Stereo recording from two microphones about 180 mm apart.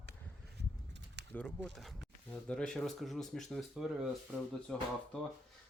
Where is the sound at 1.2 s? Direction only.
70° right (ahead or behind).